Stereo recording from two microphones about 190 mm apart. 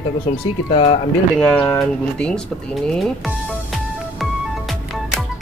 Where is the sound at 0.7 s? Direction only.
30° left (ahead or behind).